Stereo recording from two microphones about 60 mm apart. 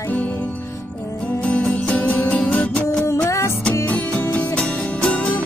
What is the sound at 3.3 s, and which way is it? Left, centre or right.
Music, left.